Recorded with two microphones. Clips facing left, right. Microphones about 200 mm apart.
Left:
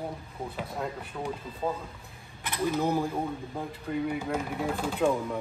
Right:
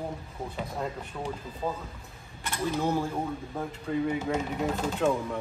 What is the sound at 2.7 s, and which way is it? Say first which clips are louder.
Speech: even; 15° left (ahead or behind).